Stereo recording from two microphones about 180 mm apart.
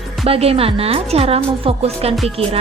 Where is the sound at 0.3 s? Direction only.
35° right (ahead or behind).